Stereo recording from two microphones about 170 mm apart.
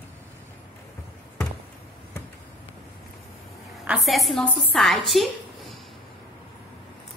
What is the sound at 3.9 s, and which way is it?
A woman's voice, centre (ahead or behind).